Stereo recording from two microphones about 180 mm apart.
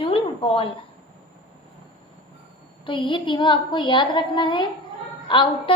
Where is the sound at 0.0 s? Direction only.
30° left (ahead or behind).